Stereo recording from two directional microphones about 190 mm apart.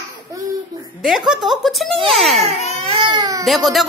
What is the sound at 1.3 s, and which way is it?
A woman's voice, centre (ahead or behind).